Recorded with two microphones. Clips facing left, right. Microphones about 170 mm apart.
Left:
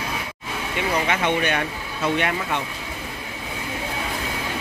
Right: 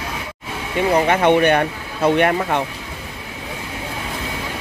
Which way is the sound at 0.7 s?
50° right (ahead or behind).